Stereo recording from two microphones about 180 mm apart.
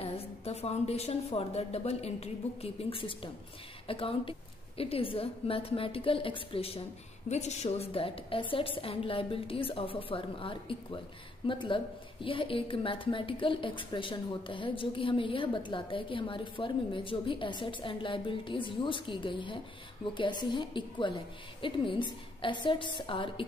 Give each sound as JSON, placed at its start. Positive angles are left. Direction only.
{"t": 0.0, "sound": "a woman's voice", "side_deg": 35}